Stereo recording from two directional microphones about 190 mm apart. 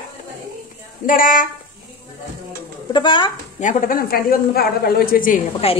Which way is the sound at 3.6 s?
40° left (ahead or behind).